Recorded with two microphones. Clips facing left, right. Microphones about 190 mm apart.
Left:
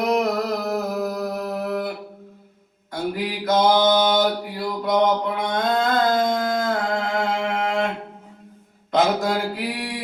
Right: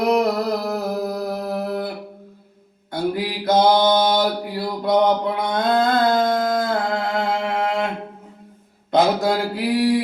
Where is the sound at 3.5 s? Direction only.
35° right (ahead or behind).